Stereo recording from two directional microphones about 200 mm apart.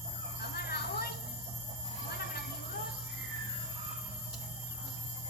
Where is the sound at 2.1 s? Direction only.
50° left (ahead or behind).